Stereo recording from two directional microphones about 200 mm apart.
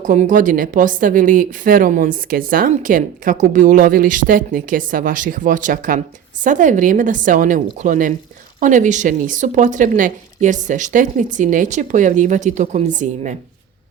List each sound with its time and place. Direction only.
0.0 s a woman's voice: 40° right (ahead or behind)